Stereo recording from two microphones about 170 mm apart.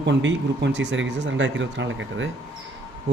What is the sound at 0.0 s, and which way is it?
Speech, 90° right.